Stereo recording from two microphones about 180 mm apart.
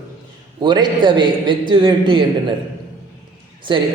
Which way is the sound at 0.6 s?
25° right (ahead or behind).